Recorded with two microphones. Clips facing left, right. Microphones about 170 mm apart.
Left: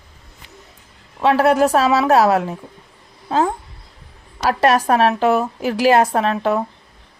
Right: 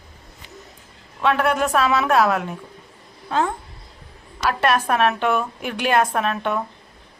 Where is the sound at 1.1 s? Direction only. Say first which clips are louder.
Left 5 dB; 35° left (ahead or behind).